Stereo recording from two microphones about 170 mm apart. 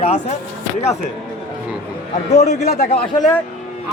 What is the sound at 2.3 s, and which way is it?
Speech, 45° left (ahead or behind).